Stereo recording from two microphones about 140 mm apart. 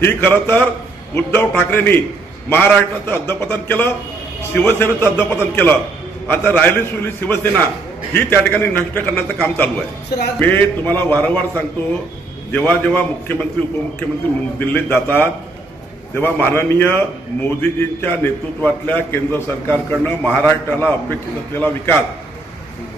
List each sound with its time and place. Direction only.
0.0 s a man's voice: 15° left (ahead or behind)